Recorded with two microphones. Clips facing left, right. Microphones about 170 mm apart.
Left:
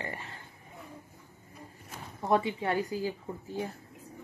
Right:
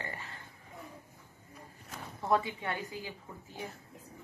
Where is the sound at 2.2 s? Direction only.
25° left (ahead or behind); by 3.1 s 40° left (ahead or behind).